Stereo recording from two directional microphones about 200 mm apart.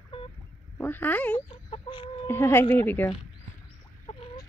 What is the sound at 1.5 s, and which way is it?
Chicken, 25° left (ahead or behind).